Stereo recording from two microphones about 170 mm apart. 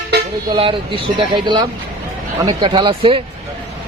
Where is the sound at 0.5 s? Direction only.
30° right (ahead or behind).